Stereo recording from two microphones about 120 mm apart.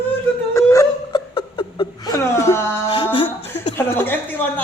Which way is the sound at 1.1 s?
45° left (ahead or behind).